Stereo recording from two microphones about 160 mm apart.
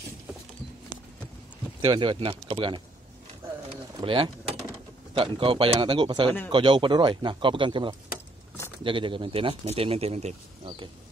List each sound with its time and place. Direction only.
1.8 s speech: 30° right (ahead or behind)
4.0 s speech: 35° right (ahead or behind)